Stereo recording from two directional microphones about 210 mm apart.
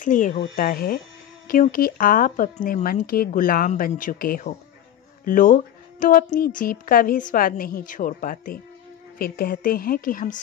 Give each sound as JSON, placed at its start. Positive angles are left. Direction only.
{"t": 0.0, "sound": "a woman's voice", "side_deg": 35}